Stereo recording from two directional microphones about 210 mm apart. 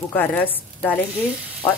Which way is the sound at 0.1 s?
10° left (ahead or behind).